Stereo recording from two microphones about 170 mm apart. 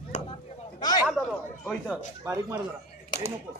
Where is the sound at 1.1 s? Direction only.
5° left (ahead or behind).